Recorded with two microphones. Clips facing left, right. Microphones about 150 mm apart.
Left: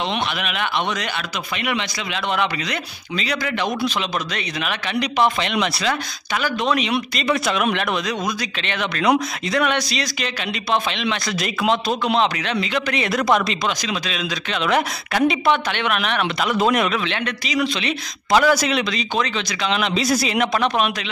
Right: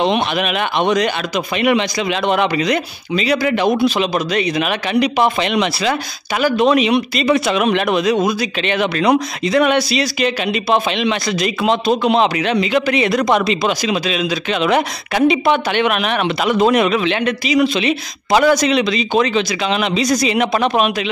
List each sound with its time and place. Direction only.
0.1 s speech: 20° right (ahead or behind); by 11.8 s centre (ahead or behind)
11.9 s speech: 30° right (ahead or behind)
12.2 s speech: 10° right (ahead or behind)
18.5 s speech: 5° left (ahead or behind)
20.5 s speech: 10° right (ahead or behind)